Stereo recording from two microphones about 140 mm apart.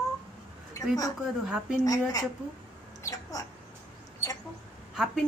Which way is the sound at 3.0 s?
25° left (ahead or behind).